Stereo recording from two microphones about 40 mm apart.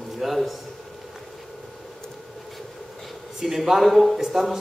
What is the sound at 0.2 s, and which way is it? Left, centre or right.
Speech, centre.